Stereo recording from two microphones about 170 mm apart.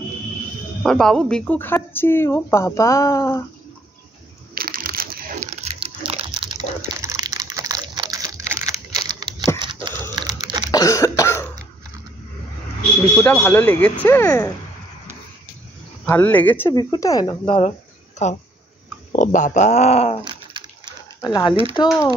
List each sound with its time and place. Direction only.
0.8 s speech: 5° left (ahead or behind)
4.6 s a sound: 60° right (ahead or behind); by 6.6 s 30° right (ahead or behind)
6.8 s a sound: 15° right (ahead or behind)
10.7 s cough: 20° left (ahead or behind)
13.2 s speech: 10° left (ahead or behind)
16.1 s speech: 10° left (ahead or behind)
16.7 s speech: 20° left (ahead or behind); by 20.2 s 40° left (ahead or behind)
20.2 s bathtub: 25° right (ahead or behind)
21.2 s speech: 25° left (ahead or behind)